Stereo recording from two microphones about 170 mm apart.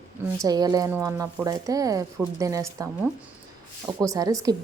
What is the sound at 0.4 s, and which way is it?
A woman's voice, 25° right (ahead or behind).